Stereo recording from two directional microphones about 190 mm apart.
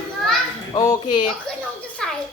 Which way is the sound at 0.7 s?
20° left (ahead or behind).